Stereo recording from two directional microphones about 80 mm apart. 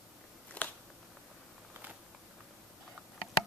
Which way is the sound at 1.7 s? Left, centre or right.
Right.